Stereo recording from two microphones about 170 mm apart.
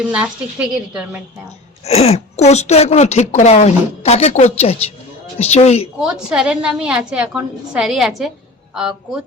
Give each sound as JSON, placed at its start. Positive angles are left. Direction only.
{"t": 0.0, "sound": "a woman's voice", "side_deg": -5}
{"t": 1.8, "sound": "speech", "side_deg": 40}
{"t": 6.0, "sound": "a woman's voice", "side_deg": -5}